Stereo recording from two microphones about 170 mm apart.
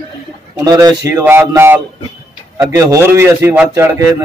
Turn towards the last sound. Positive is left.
turn(degrees=-15)  # may be behind; listen again after turning